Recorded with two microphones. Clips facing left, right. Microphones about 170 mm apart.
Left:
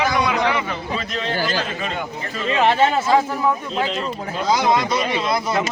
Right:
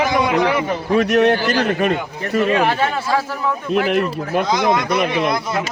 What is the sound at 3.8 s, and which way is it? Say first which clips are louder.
Speech: right 6 dB; 60° right (ahead or behind).